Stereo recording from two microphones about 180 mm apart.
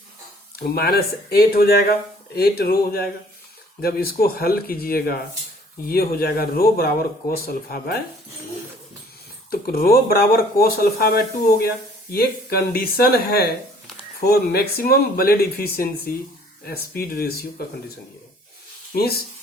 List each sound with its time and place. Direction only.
0.6 s speech: 60° left (ahead or behind)
9.5 s speech: 55° left (ahead or behind)
17.0 s speech: 60° left (ahead or behind)